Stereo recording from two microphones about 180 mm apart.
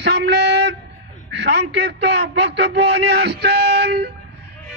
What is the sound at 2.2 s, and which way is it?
A man's voice, 70° right (ahead or behind).